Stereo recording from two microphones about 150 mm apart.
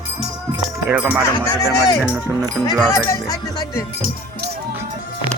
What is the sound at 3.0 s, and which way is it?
Music, 20° left (ahead or behind).